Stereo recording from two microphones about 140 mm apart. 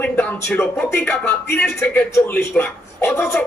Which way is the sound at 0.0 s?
10° left (ahead or behind).